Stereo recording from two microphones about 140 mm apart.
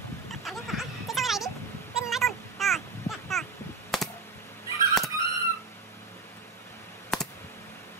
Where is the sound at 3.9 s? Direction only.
Centre (ahead or behind).